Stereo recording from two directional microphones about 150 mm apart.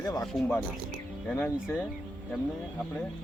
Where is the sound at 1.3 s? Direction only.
15° left (ahead or behind).